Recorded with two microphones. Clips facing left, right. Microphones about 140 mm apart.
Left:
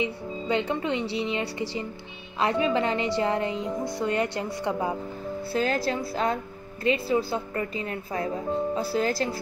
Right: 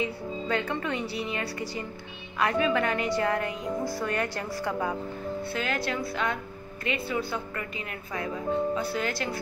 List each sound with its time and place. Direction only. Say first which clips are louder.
0.0 s a woman's voice: left 1 dB; 20° left (ahead or behind)
5.5 s speech: left 7 dB; 35° left (ahead or behind)